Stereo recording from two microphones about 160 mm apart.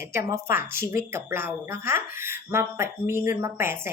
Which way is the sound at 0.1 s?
20° right (ahead or behind).